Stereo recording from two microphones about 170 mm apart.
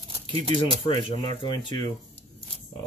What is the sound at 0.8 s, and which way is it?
Speech, 30° left (ahead or behind).